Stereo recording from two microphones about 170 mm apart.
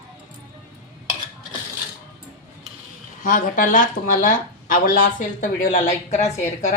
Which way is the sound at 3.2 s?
50° left (ahead or behind).